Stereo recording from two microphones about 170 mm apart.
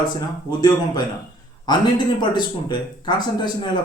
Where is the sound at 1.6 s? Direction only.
25° left (ahead or behind).